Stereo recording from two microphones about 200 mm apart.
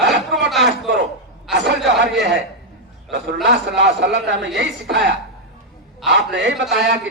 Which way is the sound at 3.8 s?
60° right (ahead or behind).